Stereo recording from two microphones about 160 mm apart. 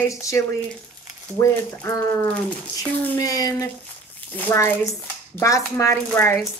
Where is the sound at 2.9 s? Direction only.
15° left (ahead or behind).